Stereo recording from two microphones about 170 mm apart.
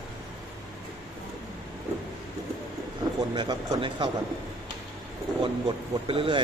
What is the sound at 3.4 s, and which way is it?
Speech, 25° right (ahead or behind).